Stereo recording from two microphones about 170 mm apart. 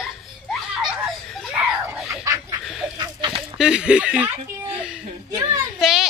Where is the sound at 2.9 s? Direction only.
25° right (ahead or behind).